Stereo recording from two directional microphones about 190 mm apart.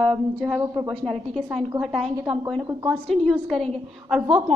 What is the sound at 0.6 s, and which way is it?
Speech, 15° right (ahead or behind).